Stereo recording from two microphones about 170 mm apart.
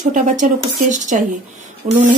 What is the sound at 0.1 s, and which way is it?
Speech, 45° right (ahead or behind).